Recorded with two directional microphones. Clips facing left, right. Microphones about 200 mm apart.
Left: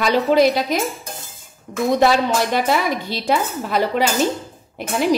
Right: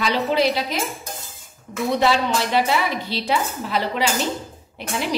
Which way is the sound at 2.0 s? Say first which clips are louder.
Left 3 dB; 50° left (ahead or behind).